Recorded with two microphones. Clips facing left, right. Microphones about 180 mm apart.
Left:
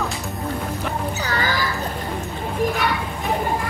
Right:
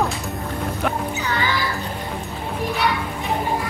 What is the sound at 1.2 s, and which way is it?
Music, 40° left (ahead or behind).